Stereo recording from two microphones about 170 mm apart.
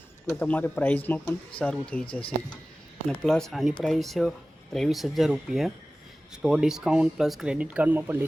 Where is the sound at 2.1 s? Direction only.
30° left (ahead or behind).